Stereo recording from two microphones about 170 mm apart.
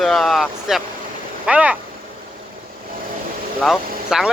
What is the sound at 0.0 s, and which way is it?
Speech, centre (ahead or behind).